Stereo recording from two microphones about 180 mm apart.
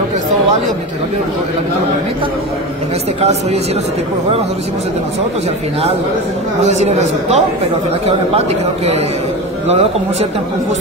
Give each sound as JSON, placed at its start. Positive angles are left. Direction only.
{"t": 6.6, "sound": "speech", "side_deg": -40}